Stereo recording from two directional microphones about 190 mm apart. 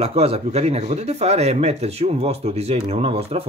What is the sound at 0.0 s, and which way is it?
Speech, 30° right (ahead or behind).